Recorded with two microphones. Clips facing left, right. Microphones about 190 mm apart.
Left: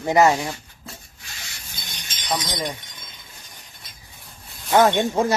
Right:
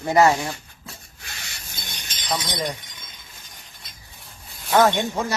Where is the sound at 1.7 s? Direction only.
50° right (ahead or behind).